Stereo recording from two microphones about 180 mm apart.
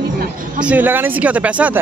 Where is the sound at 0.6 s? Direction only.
10° right (ahead or behind).